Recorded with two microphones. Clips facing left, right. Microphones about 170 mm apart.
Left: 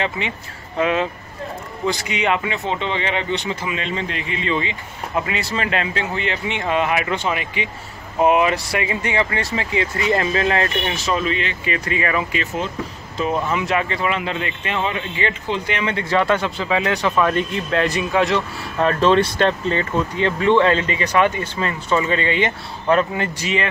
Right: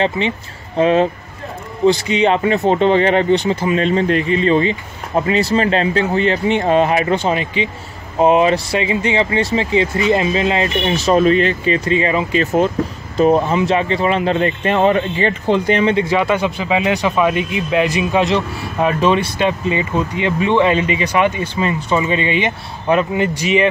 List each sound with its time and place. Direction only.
0.7 s speech: 35° right (ahead or behind)
11.1 s speech: 40° right (ahead or behind); by 12.4 s 25° right (ahead or behind)
12.4 s speech: 50° right (ahead or behind)
13.2 s speech: 35° right (ahead or behind)
15.9 s speech: 15° right (ahead or behind)